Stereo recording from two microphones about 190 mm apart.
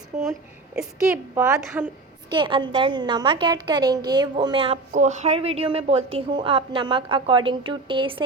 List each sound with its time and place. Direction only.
0.1 s a woman's voice: 40° right (ahead or behind)
0.8 s a woman's voice: 10° right (ahead or behind)
2.3 s a woman's voice: 25° right (ahead or behind)
4.9 s a woman's voice: 40° right (ahead or behind)